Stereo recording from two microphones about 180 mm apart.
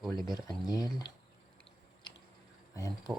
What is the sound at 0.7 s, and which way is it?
Speech, 20° left (ahead or behind).